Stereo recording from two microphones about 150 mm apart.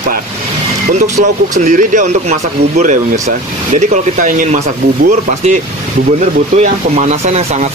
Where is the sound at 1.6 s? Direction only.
55° right (ahead or behind).